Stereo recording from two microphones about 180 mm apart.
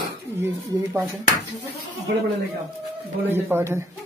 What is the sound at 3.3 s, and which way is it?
Speech, 15° right (ahead or behind).